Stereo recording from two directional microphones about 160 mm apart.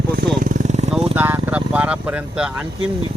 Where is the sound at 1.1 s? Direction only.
10° right (ahead or behind).